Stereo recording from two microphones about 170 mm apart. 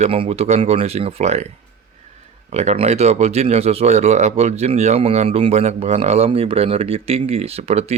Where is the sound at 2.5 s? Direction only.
40° right (ahead or behind).